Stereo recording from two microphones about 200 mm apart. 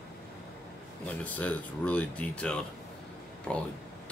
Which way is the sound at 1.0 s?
5° left (ahead or behind).